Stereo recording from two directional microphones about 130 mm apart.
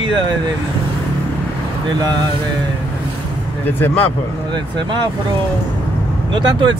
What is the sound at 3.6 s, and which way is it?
Speech, 15° left (ahead or behind).